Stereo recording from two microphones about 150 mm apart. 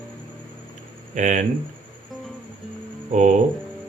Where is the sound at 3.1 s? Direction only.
50° right (ahead or behind).